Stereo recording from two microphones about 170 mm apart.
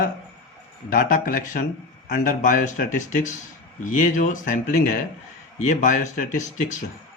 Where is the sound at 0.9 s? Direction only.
50° left (ahead or behind).